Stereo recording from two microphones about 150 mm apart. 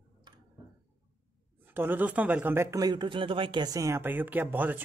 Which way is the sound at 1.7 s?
15° right (ahead or behind).